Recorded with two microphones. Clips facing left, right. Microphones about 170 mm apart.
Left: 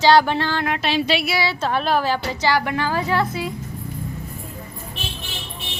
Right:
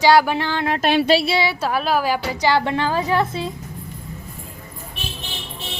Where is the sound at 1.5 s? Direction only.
10° right (ahead or behind).